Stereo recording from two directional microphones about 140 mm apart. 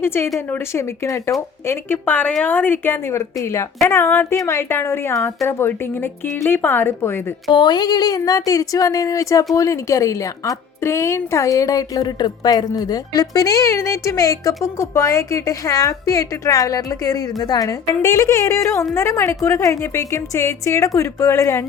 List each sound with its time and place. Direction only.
0.0 s a woman's voice: 15° left (ahead or behind)
7.5 s a woman's voice: 30° left (ahead or behind)